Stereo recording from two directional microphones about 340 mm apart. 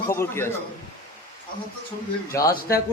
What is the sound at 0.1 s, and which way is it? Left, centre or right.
Speech, centre.